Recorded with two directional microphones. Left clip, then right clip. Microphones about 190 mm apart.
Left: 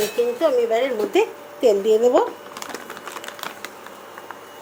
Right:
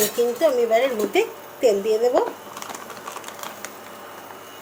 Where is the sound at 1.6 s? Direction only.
20° left (ahead or behind).